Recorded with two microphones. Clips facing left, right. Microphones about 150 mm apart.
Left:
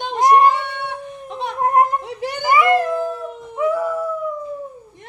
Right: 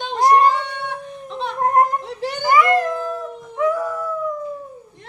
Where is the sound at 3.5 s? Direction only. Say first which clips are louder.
Even; 25° left (ahead or behind).